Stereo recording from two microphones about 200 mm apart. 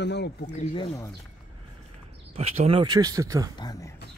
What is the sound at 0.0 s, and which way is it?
Speech, 60° left (ahead or behind).